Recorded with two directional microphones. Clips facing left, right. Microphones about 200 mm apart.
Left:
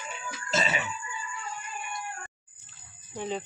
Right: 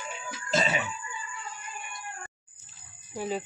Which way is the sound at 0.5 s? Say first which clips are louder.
Right 2 dB; 30° right (ahead or behind).